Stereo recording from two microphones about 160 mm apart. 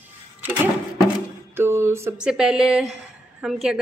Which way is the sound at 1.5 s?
15° right (ahead or behind).